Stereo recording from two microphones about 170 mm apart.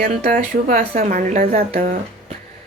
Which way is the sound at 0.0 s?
60° right (ahead or behind).